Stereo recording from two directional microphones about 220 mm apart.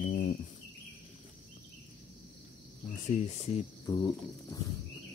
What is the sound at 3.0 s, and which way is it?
Speech, 30° left (ahead or behind).